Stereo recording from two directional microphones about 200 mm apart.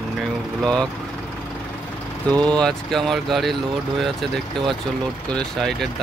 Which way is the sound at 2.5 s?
5° left (ahead or behind).